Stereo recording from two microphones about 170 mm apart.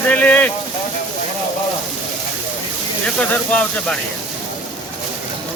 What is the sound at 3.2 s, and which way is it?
Speech, 10° left (ahead or behind).